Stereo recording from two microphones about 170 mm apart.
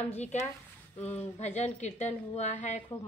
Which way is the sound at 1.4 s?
40° left (ahead or behind).